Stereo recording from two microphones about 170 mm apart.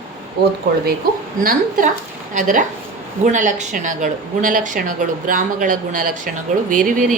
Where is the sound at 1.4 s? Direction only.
50° right (ahead or behind).